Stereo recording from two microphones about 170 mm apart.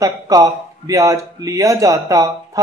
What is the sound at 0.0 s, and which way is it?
Speech, 20° right (ahead or behind).